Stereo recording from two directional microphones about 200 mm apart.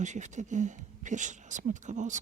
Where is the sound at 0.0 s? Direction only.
35° right (ahead or behind).